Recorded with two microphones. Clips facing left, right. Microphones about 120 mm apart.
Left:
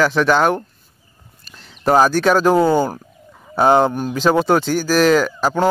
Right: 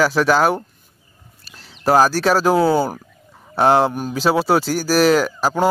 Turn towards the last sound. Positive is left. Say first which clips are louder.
# left 1 dB
turn(degrees=-5)  # may be behind; listen again after turning